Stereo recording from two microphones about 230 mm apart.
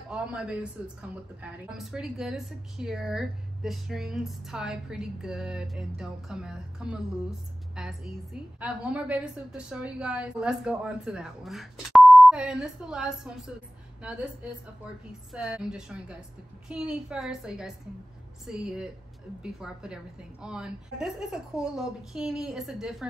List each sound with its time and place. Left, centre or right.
0.1 s a woman's voice: centre
15.3 s a woman's voice: centre